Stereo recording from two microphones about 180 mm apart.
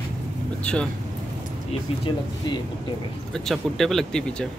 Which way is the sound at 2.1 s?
25° left (ahead or behind).